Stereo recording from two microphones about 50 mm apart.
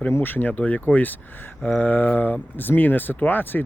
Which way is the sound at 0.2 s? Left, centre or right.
Left.